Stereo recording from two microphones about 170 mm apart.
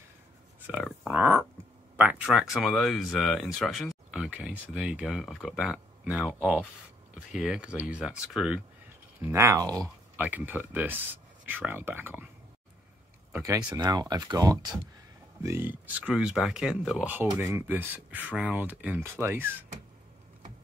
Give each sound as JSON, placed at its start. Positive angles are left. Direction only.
{"t": 1.0, "sound": "pig", "side_deg": -10}
{"t": 2.0, "sound": "speech", "side_deg": -10}
{"t": 9.2, "sound": "speech", "side_deg": -15}
{"t": 10.1, "sound": "speech", "side_deg": -10}
{"t": 13.3, "sound": "speech", "side_deg": -20}